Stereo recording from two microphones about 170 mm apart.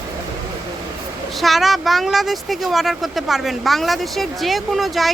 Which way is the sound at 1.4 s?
Centre (ahead or behind).